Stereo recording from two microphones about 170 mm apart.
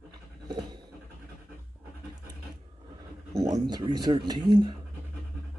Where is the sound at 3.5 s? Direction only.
25° right (ahead or behind).